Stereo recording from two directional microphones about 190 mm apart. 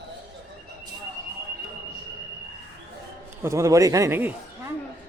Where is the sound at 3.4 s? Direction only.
15° right (ahead or behind).